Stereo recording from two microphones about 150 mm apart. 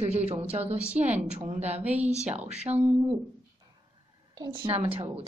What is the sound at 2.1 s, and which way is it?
Speech, 50° right (ahead or behind).